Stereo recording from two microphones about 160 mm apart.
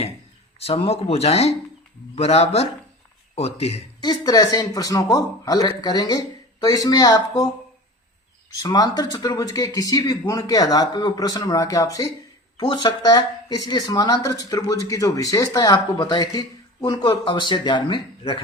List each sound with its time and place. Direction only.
0.6 s speech: 35° left (ahead or behind)
4.0 s speech: 25° left (ahead or behind)
8.6 s speech: 25° left (ahead or behind)